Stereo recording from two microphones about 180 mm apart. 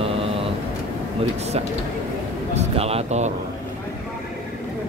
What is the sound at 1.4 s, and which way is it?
Speech, 35° right (ahead or behind).